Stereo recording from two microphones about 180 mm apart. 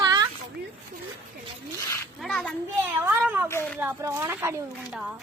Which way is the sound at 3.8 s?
15° right (ahead or behind).